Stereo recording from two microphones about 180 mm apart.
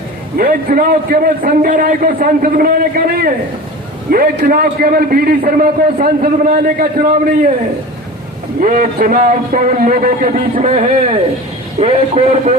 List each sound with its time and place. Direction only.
0.3 s a man's voice: 55° right (ahead or behind)
8.6 s a man's voice: 55° right (ahead or behind)
10.7 s a man's voice: 35° right (ahead or behind)